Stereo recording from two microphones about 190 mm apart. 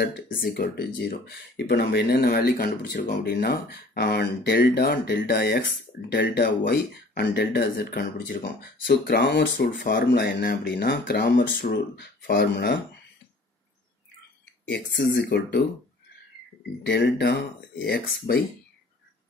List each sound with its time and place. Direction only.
0.3 s speech: 50° left (ahead or behind)
15.0 s speech: 65° left (ahead or behind)
16.8 s speech: 65° left (ahead or behind)